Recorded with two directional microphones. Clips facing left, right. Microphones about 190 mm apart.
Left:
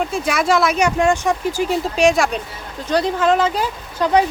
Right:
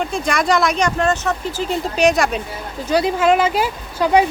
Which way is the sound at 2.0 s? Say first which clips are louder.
Even; centre (ahead or behind).